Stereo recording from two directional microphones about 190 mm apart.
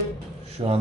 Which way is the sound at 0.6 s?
30° right (ahead or behind).